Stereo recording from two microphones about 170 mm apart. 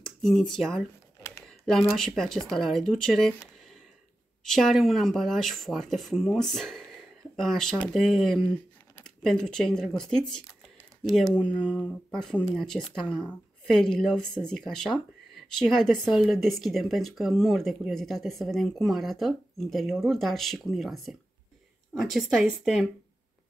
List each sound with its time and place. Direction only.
0.2 s speech: centre (ahead or behind)
4.5 s speech: centre (ahead or behind)
11.7 s speech: 5° left (ahead or behind)